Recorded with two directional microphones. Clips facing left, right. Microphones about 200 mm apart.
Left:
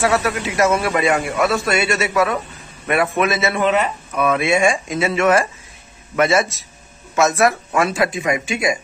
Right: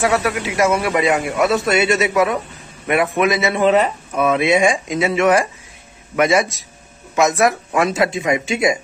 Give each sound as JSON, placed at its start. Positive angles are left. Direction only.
{"t": 0.0, "sound": "a man's voice", "side_deg": -15}
{"t": 3.6, "sound": "a man's voice", "side_deg": -30}